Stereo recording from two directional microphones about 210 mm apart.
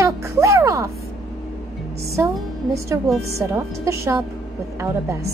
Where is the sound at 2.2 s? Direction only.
15° right (ahead or behind).